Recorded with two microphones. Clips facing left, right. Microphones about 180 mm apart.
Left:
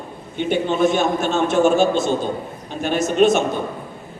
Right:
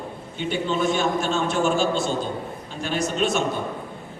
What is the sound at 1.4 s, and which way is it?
A man's voice, 20° left (ahead or behind).